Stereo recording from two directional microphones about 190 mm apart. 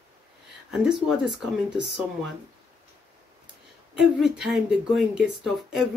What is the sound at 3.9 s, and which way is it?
Speech, centre (ahead or behind).